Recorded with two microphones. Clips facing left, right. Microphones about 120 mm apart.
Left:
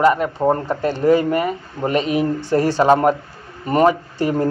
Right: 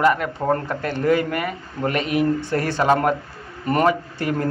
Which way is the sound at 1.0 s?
30° left (ahead or behind).